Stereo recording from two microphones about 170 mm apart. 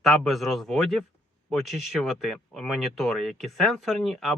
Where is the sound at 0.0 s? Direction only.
Centre (ahead or behind).